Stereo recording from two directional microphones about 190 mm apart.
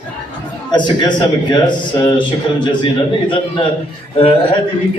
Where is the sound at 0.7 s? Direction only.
25° left (ahead or behind).